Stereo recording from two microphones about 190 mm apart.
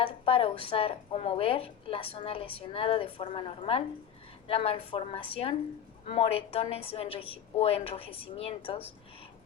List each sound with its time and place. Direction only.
0.1 s a woman's voice: 30° left (ahead or behind)